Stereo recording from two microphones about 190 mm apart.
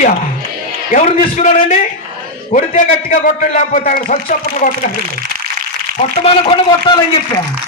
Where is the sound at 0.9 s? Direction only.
40° left (ahead or behind).